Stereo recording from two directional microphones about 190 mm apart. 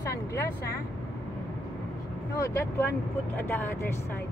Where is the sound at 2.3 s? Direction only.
15° left (ahead or behind).